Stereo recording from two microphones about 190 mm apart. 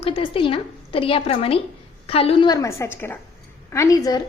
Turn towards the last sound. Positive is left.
turn(degrees=20)  # may be behind; listen again after turning